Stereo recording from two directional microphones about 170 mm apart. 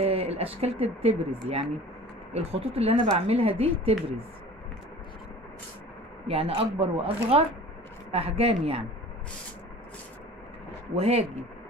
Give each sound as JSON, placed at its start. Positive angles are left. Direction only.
{"t": 0.0, "sound": "speech", "side_deg": -35}
{"t": 6.2, "sound": "speech", "side_deg": -35}
{"t": 11.0, "sound": "speech", "side_deg": -40}